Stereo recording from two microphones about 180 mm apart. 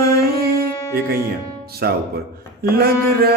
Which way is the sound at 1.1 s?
60° right (ahead or behind).